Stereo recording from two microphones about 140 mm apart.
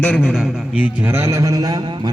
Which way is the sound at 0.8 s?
15° right (ahead or behind).